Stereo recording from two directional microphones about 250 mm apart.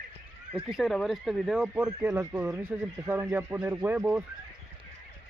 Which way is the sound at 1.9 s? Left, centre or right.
Centre.